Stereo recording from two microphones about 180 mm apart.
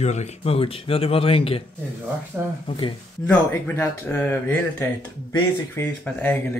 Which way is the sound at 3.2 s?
10° left (ahead or behind).